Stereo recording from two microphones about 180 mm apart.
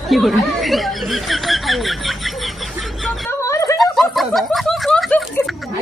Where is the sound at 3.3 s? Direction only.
15° left (ahead or behind).